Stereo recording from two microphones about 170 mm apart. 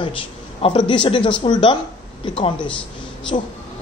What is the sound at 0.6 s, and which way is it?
A man's voice, 30° left (ahead or behind).